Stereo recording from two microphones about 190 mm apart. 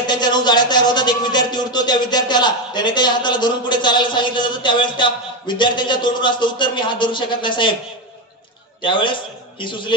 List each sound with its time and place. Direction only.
0.0 s a man's voice: 25° left (ahead or behind)
8.8 s a man's voice: 25° left (ahead or behind)